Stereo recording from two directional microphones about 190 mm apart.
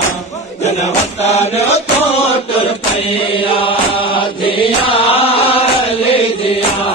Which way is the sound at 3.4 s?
30° left (ahead or behind).